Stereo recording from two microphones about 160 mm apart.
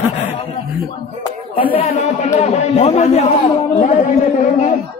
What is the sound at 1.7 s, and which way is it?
A man's voice, 40° left (ahead or behind).